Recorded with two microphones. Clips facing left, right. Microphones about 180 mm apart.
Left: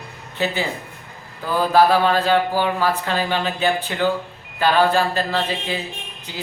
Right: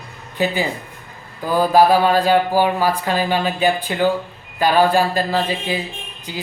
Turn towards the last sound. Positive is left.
turn(degrees=-10)  # may be behind; listen again after turning